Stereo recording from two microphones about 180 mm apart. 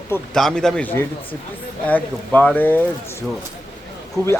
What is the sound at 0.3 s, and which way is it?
A man's voice, 5° left (ahead or behind).